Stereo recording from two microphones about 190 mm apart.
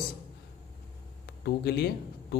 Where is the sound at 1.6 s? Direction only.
55° left (ahead or behind).